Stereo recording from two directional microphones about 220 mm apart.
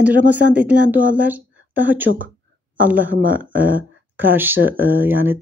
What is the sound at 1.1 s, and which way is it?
Speech, 5° right (ahead or behind).